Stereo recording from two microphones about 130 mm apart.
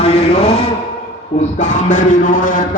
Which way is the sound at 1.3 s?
70° left (ahead or behind).